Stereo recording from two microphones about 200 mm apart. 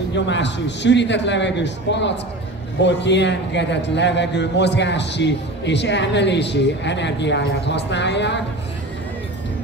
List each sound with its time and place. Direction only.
0.1 s a man's voice: 60° left (ahead or behind)